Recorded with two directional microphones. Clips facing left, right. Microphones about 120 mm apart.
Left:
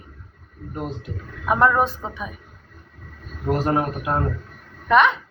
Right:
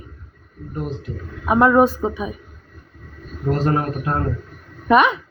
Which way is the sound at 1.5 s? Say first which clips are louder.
Right 4 dB; 5° right (ahead or behind).